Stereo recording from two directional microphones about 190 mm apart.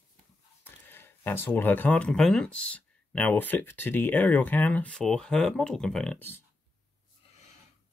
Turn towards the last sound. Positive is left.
turn(degrees=10)  # may be behind; listen again after turning